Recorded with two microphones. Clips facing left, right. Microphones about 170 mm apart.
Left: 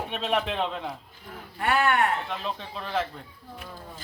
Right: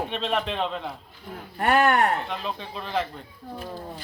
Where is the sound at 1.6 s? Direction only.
45° right (ahead or behind).